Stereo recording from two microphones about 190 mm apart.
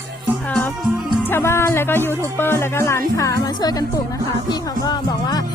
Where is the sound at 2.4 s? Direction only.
10° left (ahead or behind).